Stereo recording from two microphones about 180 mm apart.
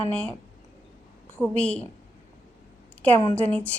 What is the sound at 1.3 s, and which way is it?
Speech, 5° left (ahead or behind).